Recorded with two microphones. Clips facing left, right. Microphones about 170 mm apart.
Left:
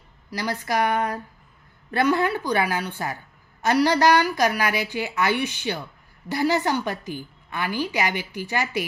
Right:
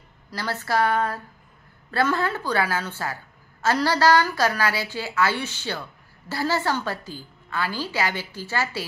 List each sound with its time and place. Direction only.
0.3 s a woman's voice: 15° left (ahead or behind)